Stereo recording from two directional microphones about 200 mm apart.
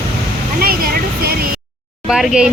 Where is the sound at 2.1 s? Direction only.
Centre (ahead or behind).